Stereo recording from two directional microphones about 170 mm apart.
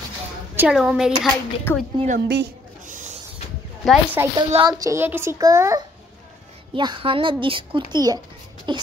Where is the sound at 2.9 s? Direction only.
45° right (ahead or behind).